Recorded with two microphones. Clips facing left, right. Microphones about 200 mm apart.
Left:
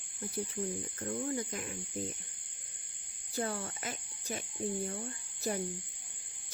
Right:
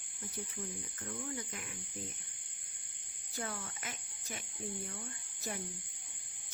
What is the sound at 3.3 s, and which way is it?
Speech, 35° left (ahead or behind).